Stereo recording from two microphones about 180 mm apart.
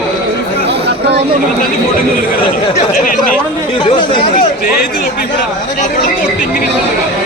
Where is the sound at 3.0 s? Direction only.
50° left (ahead or behind).